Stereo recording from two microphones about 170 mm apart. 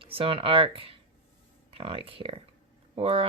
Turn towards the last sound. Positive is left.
turn(degrees=-35)  # may be behind; listen again after turning